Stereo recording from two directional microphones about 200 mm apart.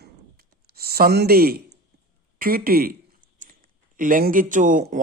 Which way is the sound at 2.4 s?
45° right (ahead or behind).